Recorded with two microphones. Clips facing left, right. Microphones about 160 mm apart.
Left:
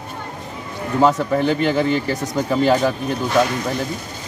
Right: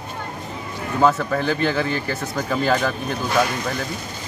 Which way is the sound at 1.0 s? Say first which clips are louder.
Left 3 dB; 15° left (ahead or behind).